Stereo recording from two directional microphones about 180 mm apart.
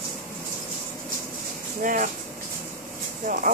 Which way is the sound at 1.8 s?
50° right (ahead or behind).